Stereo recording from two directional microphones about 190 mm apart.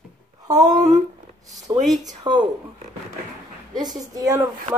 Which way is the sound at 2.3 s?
25° right (ahead or behind).